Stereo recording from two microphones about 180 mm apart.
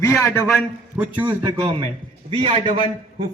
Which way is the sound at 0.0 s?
15° left (ahead or behind).